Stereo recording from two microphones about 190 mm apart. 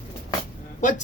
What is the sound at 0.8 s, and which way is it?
Speech, 40° left (ahead or behind).